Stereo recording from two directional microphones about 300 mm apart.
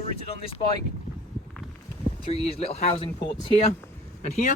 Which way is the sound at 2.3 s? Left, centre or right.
Centre.